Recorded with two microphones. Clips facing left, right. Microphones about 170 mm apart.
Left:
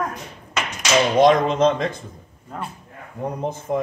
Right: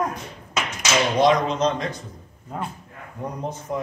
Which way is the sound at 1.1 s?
50° left (ahead or behind).